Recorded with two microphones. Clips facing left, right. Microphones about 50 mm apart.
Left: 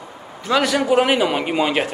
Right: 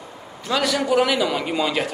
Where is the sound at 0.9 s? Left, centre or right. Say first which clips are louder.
Left 3 dB; left.